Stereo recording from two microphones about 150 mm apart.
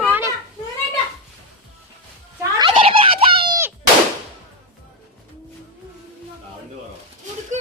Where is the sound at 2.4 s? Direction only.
30° right (ahead or behind).